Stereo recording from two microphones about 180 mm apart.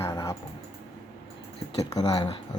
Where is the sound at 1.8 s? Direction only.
20° left (ahead or behind).